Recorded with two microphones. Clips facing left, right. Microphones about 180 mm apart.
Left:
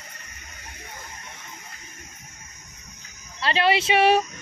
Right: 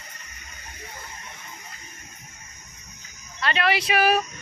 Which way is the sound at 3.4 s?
30° left (ahead or behind).